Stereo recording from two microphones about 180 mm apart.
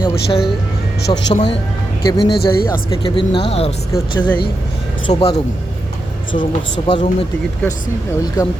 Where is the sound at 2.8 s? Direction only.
25° left (ahead or behind).